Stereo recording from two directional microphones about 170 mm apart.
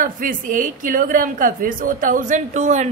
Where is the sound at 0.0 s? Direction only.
55° right (ahead or behind).